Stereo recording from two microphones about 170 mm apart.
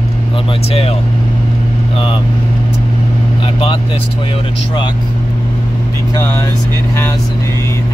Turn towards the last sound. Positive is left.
turn(degrees=20)  # may be behind; listen again after turning